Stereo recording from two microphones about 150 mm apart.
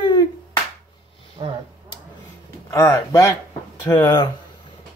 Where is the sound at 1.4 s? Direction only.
40° right (ahead or behind).